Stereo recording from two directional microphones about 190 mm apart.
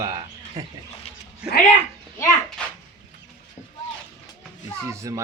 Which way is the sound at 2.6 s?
5° left (ahead or behind).